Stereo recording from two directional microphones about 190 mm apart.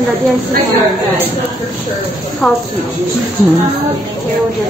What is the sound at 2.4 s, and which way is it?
Speech, 5° left (ahead or behind).